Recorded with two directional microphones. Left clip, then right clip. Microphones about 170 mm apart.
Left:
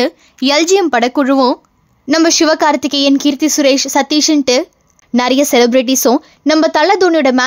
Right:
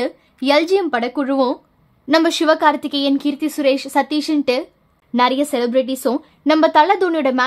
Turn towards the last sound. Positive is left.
turn(degrees=30)  # may be behind; listen again after turning